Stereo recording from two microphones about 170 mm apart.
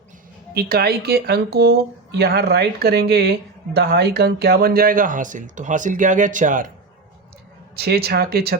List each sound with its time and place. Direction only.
0.5 s speech: 65° right (ahead or behind); by 6.7 s 50° right (ahead or behind)
7.8 s speech: 65° right (ahead or behind)